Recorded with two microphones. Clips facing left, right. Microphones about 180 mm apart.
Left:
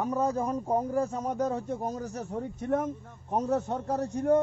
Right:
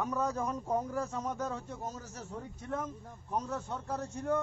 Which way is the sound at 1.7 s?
55° left (ahead or behind).